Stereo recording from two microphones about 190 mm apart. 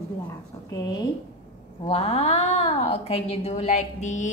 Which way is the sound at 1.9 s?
30° left (ahead or behind).